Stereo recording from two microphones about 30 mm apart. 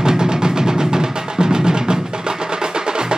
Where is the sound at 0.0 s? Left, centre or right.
Right.